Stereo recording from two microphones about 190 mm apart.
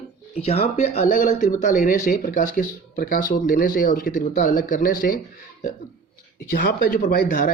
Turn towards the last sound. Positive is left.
turn(degrees=50)  # may be behind; listen again after turning